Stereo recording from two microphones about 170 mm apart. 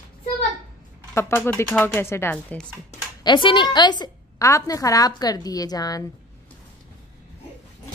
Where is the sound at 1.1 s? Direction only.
10° left (ahead or behind).